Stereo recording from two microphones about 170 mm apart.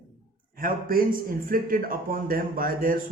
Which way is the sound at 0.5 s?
55° right (ahead or behind).